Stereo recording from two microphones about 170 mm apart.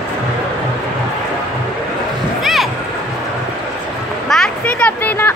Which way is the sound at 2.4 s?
Centre (ahead or behind).